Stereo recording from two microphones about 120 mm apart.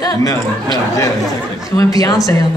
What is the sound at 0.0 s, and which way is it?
Speech, 25° left (ahead or behind).